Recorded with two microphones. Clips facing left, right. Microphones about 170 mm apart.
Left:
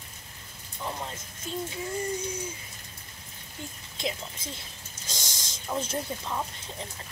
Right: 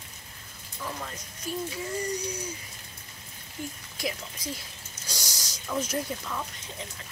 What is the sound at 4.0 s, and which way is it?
Speech, 25° left (ahead or behind).